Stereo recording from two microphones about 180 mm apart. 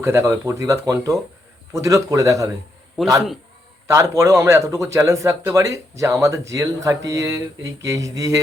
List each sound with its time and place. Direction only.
0.0 s speech: 15° right (ahead or behind)
3.8 s speech: 15° right (ahead or behind)